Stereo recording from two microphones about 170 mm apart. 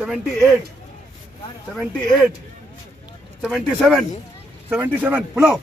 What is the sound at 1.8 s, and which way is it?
Speech, 5° right (ahead or behind).